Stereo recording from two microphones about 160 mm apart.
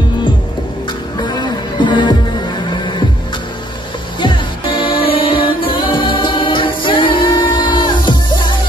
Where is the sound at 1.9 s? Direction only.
25° left (ahead or behind).